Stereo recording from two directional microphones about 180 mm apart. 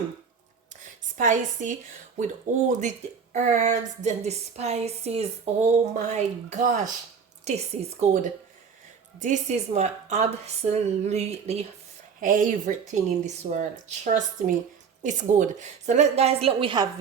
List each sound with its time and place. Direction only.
1.1 s speech: 45° right (ahead or behind)
12.2 s speech: 50° right (ahead or behind); by 16.9 s 25° right (ahead or behind)